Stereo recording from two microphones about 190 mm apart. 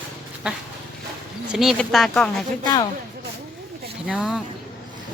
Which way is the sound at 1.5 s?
Centre (ahead or behind).